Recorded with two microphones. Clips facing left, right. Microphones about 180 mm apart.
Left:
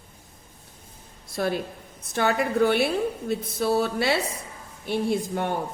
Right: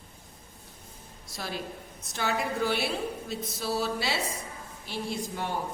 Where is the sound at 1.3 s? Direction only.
55° left (ahead or behind).